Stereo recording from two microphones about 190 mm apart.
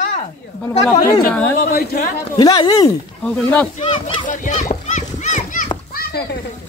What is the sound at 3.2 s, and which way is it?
Speech, 5° left (ahead or behind).